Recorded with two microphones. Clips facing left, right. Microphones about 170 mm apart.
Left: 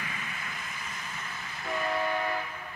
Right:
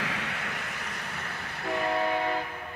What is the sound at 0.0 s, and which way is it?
Train, 75° right (ahead or behind).